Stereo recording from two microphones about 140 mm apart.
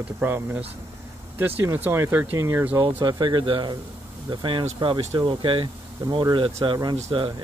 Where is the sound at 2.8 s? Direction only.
30° right (ahead or behind).